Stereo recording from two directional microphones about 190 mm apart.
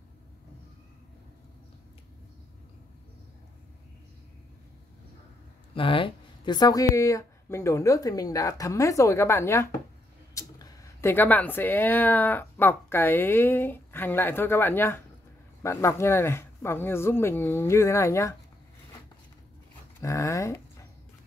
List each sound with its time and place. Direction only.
5.8 s speech: 25° left (ahead or behind)
20.0 s speech: 15° left (ahead or behind)